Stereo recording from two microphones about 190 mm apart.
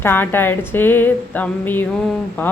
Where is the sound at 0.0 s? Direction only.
10° left (ahead or behind).